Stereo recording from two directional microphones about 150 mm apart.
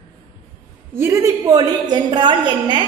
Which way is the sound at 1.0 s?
20° right (ahead or behind).